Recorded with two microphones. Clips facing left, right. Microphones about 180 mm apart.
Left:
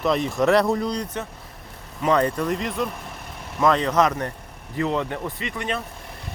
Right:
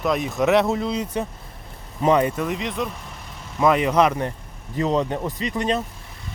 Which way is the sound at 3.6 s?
10° right (ahead or behind).